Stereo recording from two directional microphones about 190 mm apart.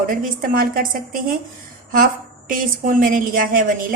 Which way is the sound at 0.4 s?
50° right (ahead or behind).